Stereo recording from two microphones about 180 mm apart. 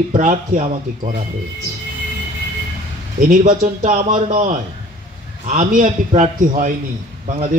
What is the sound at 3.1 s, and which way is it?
A man's voice, 45° right (ahead or behind).